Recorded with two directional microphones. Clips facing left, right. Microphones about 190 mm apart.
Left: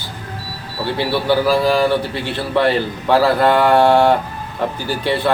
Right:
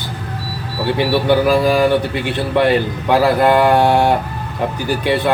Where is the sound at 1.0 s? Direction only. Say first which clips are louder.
Right 2 dB; 20° right (ahead or behind).